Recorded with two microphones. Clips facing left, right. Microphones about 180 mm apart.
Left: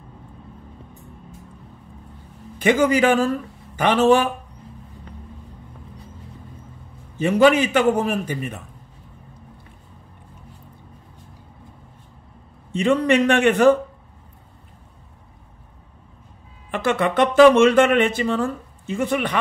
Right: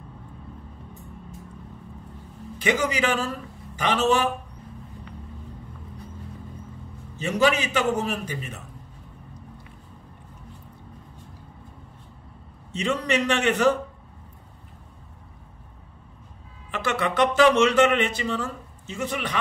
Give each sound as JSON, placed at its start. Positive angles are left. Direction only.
{"t": 2.6, "sound": "speech", "side_deg": 50}
{"t": 7.2, "sound": "speech", "side_deg": 55}
{"t": 12.7, "sound": "speech", "side_deg": 55}
{"t": 16.7, "sound": "speech", "side_deg": 50}